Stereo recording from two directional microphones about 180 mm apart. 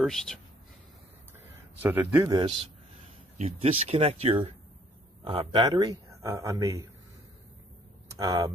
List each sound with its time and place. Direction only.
0.0 s speech: 5° left (ahead or behind)
1.5 s a man's voice: 10° right (ahead or behind)
3.3 s speech: 35° right (ahead or behind); by 6.9 s 20° right (ahead or behind)
8.2 s speech: 20° right (ahead or behind)